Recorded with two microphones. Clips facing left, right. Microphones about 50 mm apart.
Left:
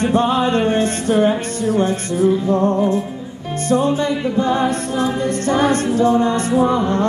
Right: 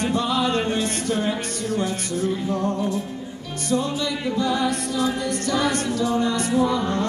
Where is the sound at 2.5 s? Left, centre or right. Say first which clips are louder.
Left 8 dB; left.